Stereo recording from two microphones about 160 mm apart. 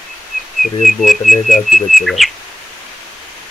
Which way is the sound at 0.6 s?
Centre (ahead or behind).